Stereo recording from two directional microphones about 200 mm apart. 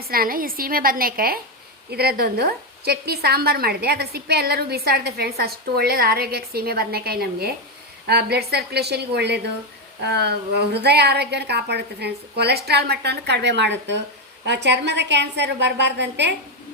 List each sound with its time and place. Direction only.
0.0 s a woman's voice: 50° right (ahead or behind)